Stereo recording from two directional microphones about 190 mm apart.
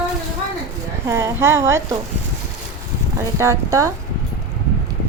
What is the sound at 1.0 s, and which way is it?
Speech, 15° right (ahead or behind).